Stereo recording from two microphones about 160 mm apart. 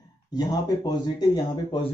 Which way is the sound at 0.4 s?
25° left (ahead or behind).